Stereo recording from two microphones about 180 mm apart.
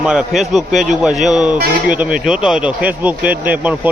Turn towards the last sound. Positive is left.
turn(degrees=-10)  # may be behind; listen again after turning